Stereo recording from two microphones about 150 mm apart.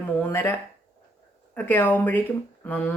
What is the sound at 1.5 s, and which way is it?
Speech, 15° left (ahead or behind).